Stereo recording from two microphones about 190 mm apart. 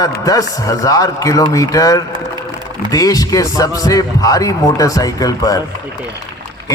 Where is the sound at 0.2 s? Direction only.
20° left (ahead or behind).